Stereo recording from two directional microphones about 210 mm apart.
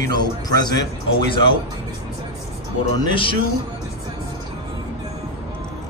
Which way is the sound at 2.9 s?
20° left (ahead or behind).